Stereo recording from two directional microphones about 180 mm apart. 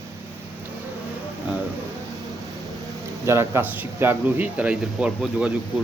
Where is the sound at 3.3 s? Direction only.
15° right (ahead or behind).